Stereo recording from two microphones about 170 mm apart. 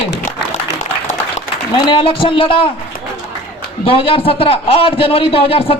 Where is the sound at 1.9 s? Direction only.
30° left (ahead or behind).